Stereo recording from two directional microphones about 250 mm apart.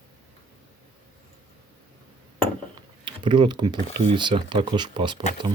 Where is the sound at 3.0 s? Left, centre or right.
Centre.